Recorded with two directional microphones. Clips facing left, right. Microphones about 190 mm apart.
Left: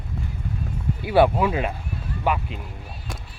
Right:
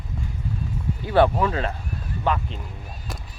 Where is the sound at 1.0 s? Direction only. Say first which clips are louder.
Left 1 dB; 10° left (ahead or behind).